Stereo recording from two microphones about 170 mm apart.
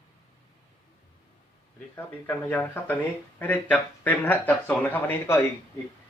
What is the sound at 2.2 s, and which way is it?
Speech, 10° left (ahead or behind).